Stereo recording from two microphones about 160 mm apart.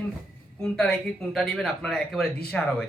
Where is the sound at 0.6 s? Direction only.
5° left (ahead or behind).